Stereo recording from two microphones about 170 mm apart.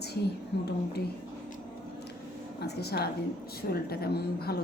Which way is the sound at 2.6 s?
70° left (ahead or behind).